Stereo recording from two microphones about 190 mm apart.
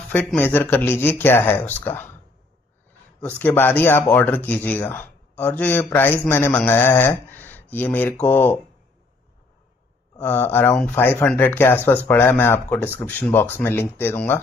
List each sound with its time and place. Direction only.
0.1 s speech: 10° left (ahead or behind)
3.2 s speech: 10° left (ahead or behind)
10.1 s speech: 10° left (ahead or behind)